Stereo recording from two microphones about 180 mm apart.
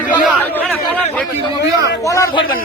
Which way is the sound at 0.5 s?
10° left (ahead or behind).